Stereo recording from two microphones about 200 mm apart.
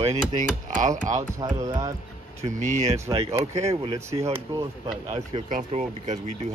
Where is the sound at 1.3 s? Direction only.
20° right (ahead or behind).